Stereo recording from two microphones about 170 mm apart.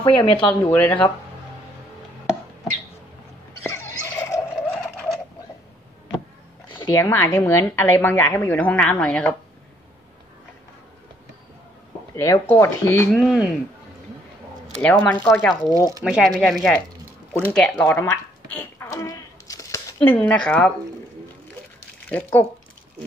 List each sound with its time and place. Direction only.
0.0 s speech: 30° left (ahead or behind)
0.5 s a woman's voice: 10° left (ahead or behind)
3.6 s turkey: 15° left (ahead or behind)
4.9 s bird: centre (ahead or behind)
6.7 s a woman's voice: 20° left (ahead or behind); by 9.3 s 5° left (ahead or behind)
12.2 s a woman's voice: 15° left (ahead or behind)
13.1 s speech: centre (ahead or behind)
14.8 s a woman's voice: 10° left (ahead or behind)
16.0 s speech: 5° right (ahead or behind)
17.3 s a sound: 10° left (ahead or behind)
22.1 s a woman's voice: 10° left (ahead or behind)